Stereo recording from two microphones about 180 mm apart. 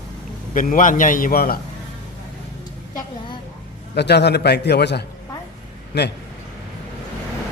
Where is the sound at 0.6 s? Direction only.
45° left (ahead or behind).